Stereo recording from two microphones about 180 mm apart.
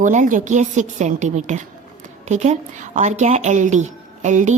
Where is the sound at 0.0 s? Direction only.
45° right (ahead or behind).